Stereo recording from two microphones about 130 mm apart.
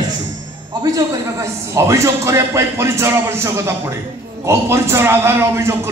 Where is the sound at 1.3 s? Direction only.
25° right (ahead or behind).